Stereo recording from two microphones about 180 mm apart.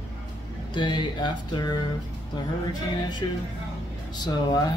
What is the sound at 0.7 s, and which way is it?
Speech, 25° left (ahead or behind).